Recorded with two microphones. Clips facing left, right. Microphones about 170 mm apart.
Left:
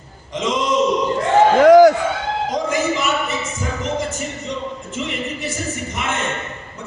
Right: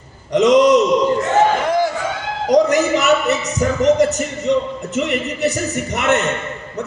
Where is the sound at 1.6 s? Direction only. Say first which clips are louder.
Left 10 dB; 90° left.